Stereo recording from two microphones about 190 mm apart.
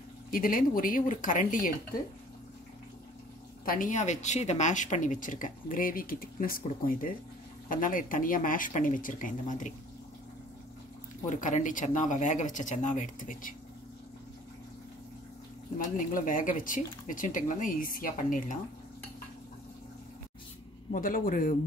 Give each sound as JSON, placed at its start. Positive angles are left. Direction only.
{"t": 0.3, "sound": "a woman's voice", "side_deg": 45}
{"t": 3.6, "sound": "a woman's voice", "side_deg": 45}
{"t": 11.2, "sound": "speech", "side_deg": 40}
{"t": 15.8, "sound": "a woman's voice", "side_deg": 45}
{"t": 20.9, "sound": "a woman's voice", "side_deg": 45}